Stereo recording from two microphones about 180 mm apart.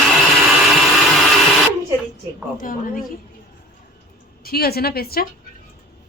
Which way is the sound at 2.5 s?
50° left (ahead or behind).